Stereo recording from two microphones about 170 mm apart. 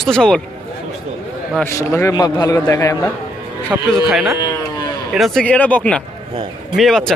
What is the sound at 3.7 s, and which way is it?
Speech, 10° right (ahead or behind).